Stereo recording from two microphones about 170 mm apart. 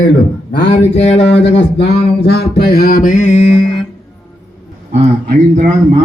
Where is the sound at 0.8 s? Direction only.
40° left (ahead or behind).